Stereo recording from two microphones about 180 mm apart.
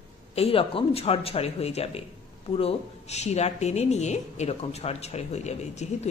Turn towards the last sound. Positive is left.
turn(degrees=40)  # may be behind; listen again after turning